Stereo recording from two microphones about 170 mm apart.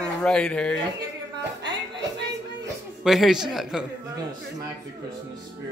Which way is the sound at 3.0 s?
Centre (ahead or behind).